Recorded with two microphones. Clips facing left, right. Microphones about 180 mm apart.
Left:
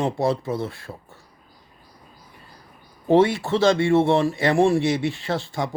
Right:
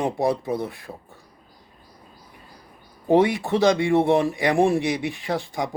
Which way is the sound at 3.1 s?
15° right (ahead or behind).